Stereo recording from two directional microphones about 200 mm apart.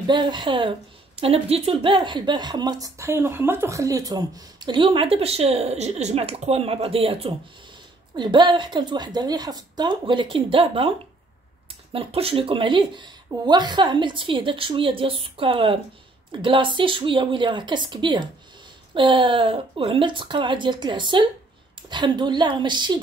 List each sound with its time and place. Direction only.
0.0 s a woman's voice: 20° right (ahead or behind)